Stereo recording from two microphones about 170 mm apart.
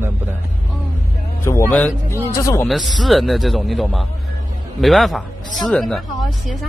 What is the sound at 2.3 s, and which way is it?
Speech, 20° left (ahead or behind).